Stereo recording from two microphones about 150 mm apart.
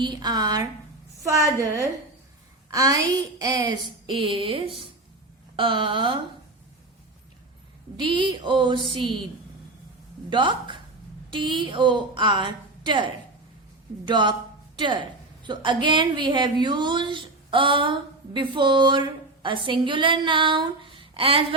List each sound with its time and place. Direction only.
0.0 s a woman's voice: 30° right (ahead or behind)
7.9 s a woman's voice: 35° right (ahead or behind)
10.2 s a woman's voice: 30° right (ahead or behind)